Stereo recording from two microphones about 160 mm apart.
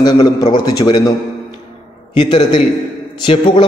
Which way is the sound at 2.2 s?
30° left (ahead or behind).